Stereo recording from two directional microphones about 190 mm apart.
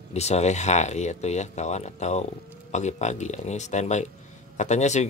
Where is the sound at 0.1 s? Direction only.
35° left (ahead or behind).